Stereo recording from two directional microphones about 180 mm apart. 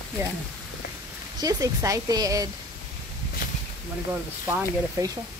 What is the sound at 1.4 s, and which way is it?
Speech, 20° right (ahead or behind).